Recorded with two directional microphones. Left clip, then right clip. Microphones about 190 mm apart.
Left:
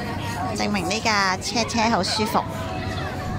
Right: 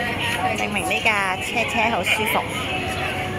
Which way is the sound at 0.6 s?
20° left (ahead or behind).